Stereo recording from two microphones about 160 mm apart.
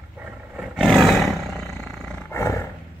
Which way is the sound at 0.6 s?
Centre (ahead or behind).